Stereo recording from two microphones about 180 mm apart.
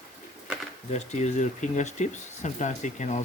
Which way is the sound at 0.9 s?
40° left (ahead or behind).